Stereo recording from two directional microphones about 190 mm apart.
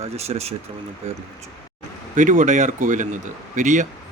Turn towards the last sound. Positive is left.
turn(degrees=-40)  # may be behind; listen again after turning